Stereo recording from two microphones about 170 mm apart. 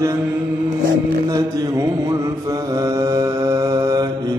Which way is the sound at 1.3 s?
20° right (ahead or behind).